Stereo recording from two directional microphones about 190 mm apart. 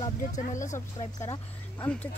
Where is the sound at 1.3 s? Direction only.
10° left (ahead or behind).